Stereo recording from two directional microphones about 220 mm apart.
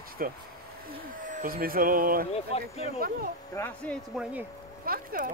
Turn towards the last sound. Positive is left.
turn(degrees=-40)  # may be behind; listen again after turning